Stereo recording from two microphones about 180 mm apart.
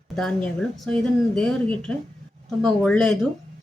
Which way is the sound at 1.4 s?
5° left (ahead or behind).